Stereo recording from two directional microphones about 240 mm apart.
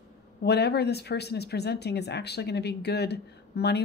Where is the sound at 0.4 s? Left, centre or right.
Left.